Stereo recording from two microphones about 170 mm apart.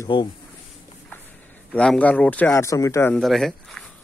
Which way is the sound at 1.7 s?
5° left (ahead or behind).